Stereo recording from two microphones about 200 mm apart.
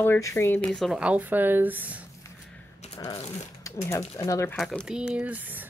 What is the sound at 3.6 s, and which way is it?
Speech, 15° left (ahead or behind).